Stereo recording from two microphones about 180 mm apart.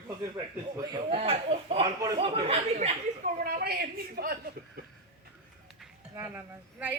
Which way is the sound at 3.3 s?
55° right (ahead or behind).